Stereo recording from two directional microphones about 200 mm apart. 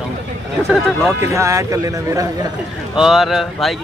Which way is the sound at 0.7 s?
Centre (ahead or behind).